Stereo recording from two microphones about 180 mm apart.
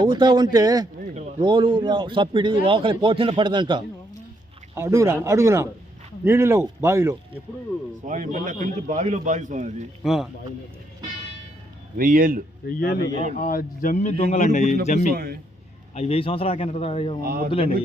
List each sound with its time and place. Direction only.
0.0 s a man's voice: 25° right (ahead or behind)
4.7 s speech: 15° right (ahead or behind)
8.0 s a man's voice: 45° right (ahead or behind)
10.0 s speech: centre (ahead or behind)
11.9 s a man's voice: 50° right (ahead or behind)
12.6 s a man's voice: 55° left (ahead or behind)
15.1 s a man's voice: 60° right (ahead or behind)
16.0 s a man's voice: 30° left (ahead or behind)
17.2 s a man's voice: 55° right (ahead or behind)
17.5 s a man's voice: 30° left (ahead or behind)